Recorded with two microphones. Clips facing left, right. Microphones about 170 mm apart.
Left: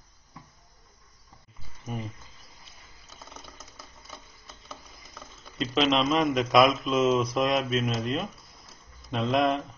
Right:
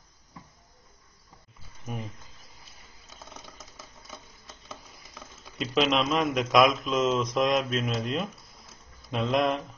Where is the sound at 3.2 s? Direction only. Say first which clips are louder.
Even; centre (ahead or behind).